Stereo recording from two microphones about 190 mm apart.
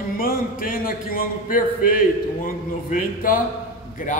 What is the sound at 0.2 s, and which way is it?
A man's voice, 50° left (ahead or behind).